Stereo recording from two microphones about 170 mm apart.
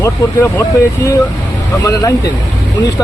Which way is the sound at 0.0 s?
15° left (ahead or behind).